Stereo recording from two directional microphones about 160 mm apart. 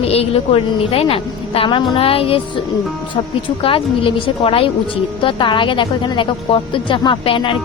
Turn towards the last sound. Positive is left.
turn(degrees=30)  # may be behind; listen again after turning